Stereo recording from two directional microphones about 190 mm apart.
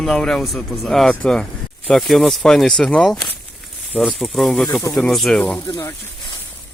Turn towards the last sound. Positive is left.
turn(degrees=20)  # may be behind; listen again after turning